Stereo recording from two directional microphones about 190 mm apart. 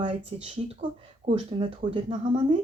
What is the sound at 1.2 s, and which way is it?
Speech, 30° right (ahead or behind).